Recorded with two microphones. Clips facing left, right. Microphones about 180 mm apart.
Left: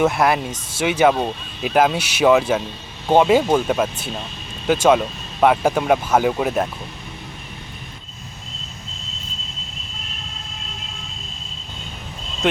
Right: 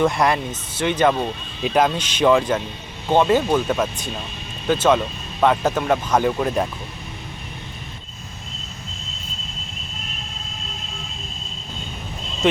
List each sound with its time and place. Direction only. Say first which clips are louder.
0.0 s speech: left 1 dB; 5° left (ahead or behind)